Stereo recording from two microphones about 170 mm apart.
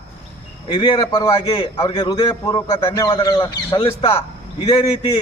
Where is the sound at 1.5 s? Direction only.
30° left (ahead or behind).